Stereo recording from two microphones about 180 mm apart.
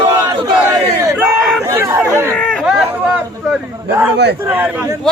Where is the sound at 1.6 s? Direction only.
15° right (ahead or behind).